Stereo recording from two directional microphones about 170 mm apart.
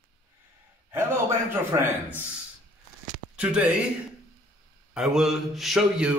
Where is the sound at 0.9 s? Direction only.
15° right (ahead or behind).